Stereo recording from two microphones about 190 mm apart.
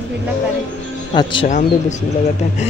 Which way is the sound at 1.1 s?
25° left (ahead or behind).